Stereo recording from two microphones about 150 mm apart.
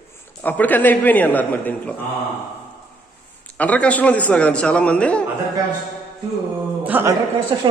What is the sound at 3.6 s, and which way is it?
A man's voice, 10° left (ahead or behind).